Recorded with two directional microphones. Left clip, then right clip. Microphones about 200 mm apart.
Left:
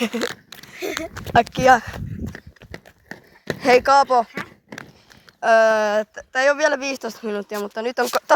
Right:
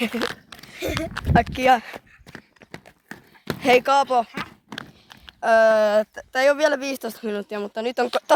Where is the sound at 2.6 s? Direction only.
5° right (ahead or behind).